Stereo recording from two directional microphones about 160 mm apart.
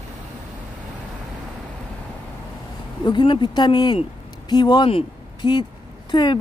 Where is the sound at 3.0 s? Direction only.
30° left (ahead or behind).